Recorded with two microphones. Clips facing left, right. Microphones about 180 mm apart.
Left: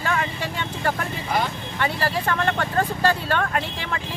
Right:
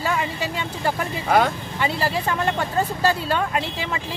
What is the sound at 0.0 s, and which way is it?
Vehicle, 10° right (ahead or behind).